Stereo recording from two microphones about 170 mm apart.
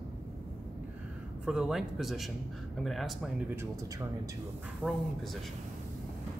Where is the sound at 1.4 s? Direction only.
5° right (ahead or behind).